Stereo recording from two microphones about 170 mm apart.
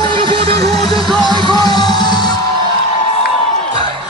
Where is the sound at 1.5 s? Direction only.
25° left (ahead or behind).